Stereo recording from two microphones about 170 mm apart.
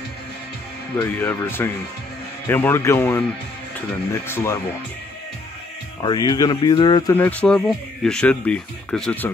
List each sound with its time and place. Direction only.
0.9 s speech: 10° left (ahead or behind)
5.9 s speech: 25° left (ahead or behind)
7.2 s speech: 10° left (ahead or behind)